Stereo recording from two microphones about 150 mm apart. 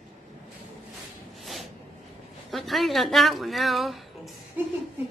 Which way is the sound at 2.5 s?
Centre (ahead or behind).